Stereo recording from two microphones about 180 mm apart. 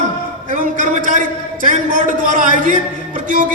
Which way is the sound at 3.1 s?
45° right (ahead or behind).